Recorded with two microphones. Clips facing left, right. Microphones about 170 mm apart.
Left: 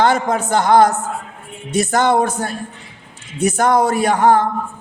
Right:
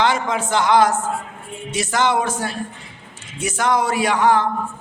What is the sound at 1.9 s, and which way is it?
Speech, 50° left (ahead or behind).